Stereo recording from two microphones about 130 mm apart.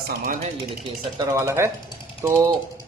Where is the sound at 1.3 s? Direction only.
20° right (ahead or behind).